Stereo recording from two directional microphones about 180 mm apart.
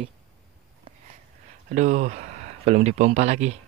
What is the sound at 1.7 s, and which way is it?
Speech, 40° right (ahead or behind).